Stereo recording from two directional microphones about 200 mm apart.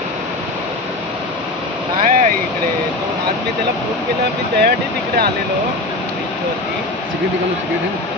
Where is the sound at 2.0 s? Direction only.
40° right (ahead or behind).